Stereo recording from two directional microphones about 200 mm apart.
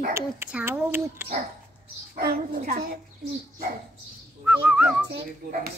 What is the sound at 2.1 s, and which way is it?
Speech, 50° right (ahead or behind).